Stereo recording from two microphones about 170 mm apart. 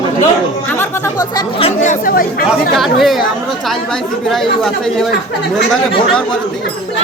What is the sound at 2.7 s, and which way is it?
Speech, centre (ahead or behind).